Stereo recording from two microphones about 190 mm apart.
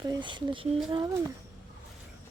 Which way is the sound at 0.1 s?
25° right (ahead or behind).